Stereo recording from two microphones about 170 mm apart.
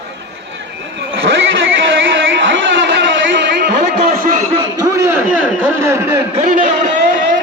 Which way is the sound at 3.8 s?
55° right (ahead or behind).